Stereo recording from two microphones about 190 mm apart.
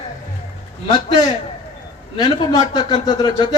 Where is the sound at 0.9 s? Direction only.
25° left (ahead or behind).